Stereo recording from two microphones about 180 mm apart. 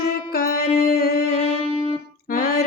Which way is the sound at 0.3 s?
55° left (ahead or behind).